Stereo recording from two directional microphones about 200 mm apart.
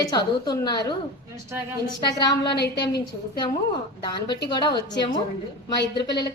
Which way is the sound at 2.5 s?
55° left (ahead or behind).